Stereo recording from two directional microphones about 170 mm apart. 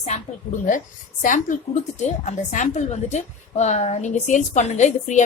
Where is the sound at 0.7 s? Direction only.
50° left (ahead or behind).